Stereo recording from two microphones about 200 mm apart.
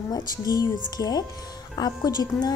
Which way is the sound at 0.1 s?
20° left (ahead or behind).